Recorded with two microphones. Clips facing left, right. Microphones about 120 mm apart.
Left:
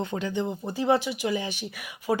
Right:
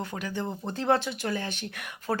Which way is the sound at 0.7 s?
10° left (ahead or behind).